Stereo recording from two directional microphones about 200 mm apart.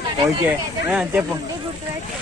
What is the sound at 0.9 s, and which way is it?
Speech, 5° right (ahead or behind).